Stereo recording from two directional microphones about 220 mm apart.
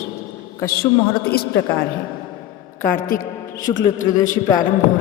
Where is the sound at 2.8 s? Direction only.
35° left (ahead or behind).